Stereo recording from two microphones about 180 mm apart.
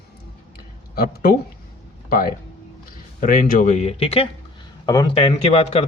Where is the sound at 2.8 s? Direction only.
50° left (ahead or behind); by 4.3 s 35° left (ahead or behind).